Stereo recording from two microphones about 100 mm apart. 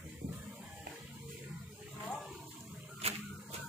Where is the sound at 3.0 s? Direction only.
90° right.